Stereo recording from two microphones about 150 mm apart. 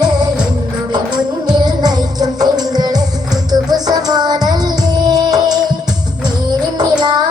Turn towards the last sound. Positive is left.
turn(degrees=-30)  # may be behind; listen again after turning